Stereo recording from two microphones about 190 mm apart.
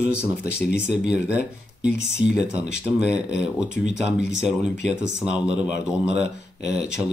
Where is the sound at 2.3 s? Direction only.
40° right (ahead or behind).